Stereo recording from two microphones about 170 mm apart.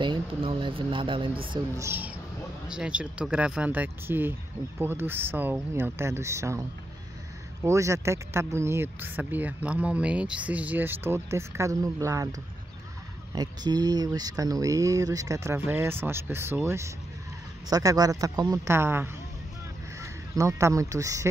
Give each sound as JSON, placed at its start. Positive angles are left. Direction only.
{"t": 0.0, "sound": "speech", "side_deg": -30}
{"t": 1.8, "sound": "speech", "side_deg": -10}
{"t": 7.6, "sound": "speech", "side_deg": -15}